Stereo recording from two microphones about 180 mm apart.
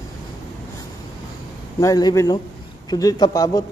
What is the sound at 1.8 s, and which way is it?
Speech, 20° left (ahead or behind).